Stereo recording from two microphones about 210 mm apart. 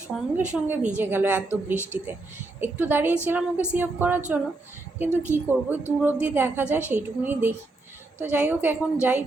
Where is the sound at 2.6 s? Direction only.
10° right (ahead or behind).